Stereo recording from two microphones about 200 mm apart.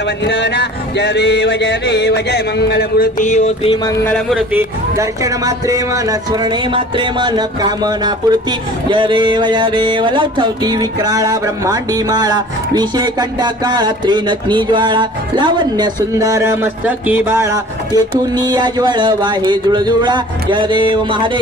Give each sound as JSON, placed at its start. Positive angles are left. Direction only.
{"t": 0.2, "sound": "a sound", "side_deg": 60}
{"t": 4.0, "sound": "speech", "side_deg": 0}
{"t": 4.6, "sound": "speech", "side_deg": -15}